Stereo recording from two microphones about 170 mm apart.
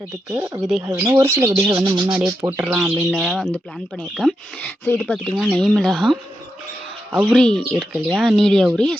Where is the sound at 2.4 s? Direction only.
10° right (ahead or behind).